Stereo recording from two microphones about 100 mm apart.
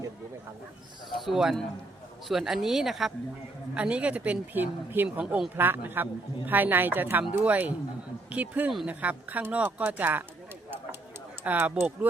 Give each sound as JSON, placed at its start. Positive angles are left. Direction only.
{"t": 1.1, "sound": "speech", "side_deg": 0}
{"t": 3.8, "sound": "a woman's voice", "side_deg": -15}
{"t": 11.4, "sound": "speech", "side_deg": -15}